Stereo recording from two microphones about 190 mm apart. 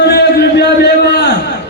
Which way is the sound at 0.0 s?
60° left (ahead or behind).